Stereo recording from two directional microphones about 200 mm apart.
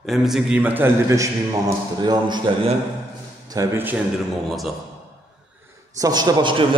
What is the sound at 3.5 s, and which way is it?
Speech, 10° right (ahead or behind).